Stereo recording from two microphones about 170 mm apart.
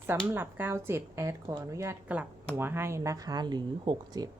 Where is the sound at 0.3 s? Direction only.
10° right (ahead or behind).